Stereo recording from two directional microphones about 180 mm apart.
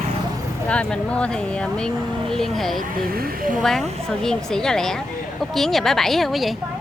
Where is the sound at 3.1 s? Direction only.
55° right (ahead or behind).